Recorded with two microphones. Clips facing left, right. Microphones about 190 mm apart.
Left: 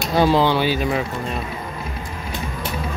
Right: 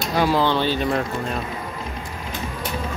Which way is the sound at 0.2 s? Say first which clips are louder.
Left 3 dB; 25° left (ahead or behind).